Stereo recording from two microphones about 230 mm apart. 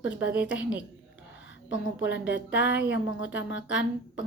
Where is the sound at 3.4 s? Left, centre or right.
Left.